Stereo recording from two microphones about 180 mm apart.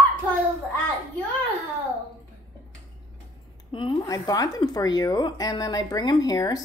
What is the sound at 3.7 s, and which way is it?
Speech, 25° left (ahead or behind).